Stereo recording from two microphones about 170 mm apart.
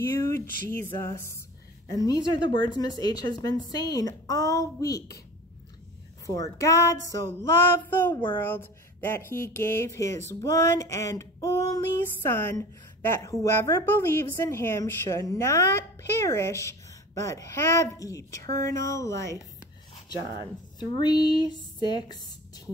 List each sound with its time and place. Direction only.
0.0 s a woman's voice: 15° left (ahead or behind)
6.2 s a woman's voice: 20° left (ahead or behind)
21.0 s a woman's voice: 25° left (ahead or behind)